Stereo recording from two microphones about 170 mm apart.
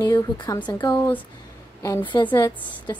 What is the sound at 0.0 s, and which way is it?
Speech, 25° left (ahead or behind).